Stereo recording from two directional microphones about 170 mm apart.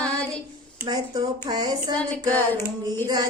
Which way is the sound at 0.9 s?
25° right (ahead or behind).